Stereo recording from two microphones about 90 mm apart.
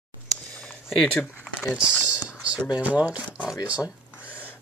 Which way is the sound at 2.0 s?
15° right (ahead or behind).